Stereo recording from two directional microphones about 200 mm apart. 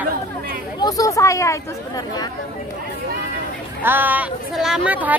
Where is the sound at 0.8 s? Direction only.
15° left (ahead or behind).